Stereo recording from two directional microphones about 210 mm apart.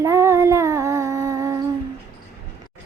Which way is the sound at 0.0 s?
15° right (ahead or behind).